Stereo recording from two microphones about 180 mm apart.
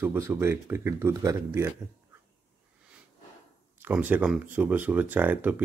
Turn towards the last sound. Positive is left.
turn(degrees=-10)  # may be behind; listen again after turning